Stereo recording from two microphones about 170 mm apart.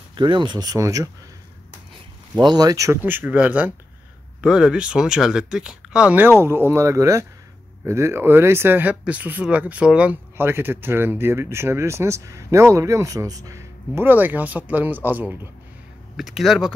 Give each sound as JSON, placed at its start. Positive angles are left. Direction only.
{"t": 0.1, "sound": "speech", "side_deg": -25}
{"t": 2.4, "sound": "speech", "side_deg": -25}